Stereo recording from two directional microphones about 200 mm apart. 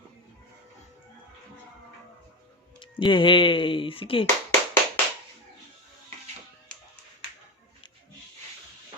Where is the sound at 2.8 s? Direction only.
25° left (ahead or behind).